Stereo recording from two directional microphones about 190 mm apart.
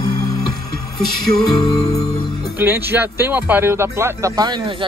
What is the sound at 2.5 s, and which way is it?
Speech, 10° right (ahead or behind).